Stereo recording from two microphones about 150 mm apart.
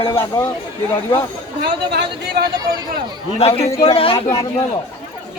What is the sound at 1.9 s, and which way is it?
A man's voice, 85° right.